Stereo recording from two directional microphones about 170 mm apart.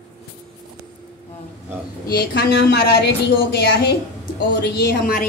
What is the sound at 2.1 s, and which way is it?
Speech, 65° left (ahead or behind).